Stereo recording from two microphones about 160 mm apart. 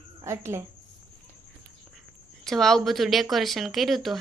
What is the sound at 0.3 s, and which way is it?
Speech, 15° right (ahead or behind).